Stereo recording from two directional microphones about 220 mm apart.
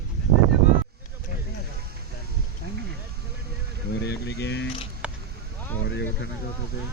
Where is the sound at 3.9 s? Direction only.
50° left (ahead or behind).